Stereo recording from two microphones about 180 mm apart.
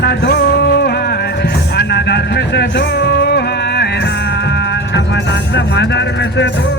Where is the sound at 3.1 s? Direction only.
65° left (ahead or behind).